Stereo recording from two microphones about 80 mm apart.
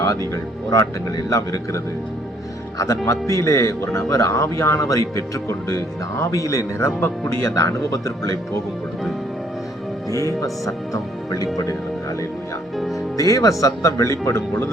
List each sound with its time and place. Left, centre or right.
0.0 s music: left
0.7 s a man's voice: left
10.1 s a man's voice: left
13.1 s a man's voice: left